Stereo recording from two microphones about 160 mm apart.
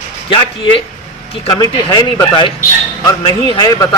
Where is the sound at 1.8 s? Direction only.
30° left (ahead or behind).